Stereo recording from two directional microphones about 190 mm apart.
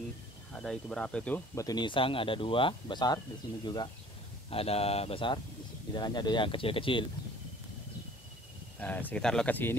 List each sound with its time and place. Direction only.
0.5 s speech: 5° left (ahead or behind); by 7.1 s 25° left (ahead or behind)
8.7 s speech: 10° left (ahead or behind)